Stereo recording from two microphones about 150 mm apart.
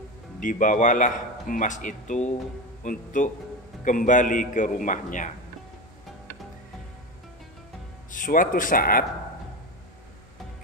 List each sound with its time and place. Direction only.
0.4 s speech: 60° left (ahead or behind)
8.1 s speech: 65° left (ahead or behind)